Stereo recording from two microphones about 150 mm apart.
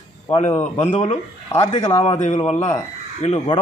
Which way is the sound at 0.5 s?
15° left (ahead or behind).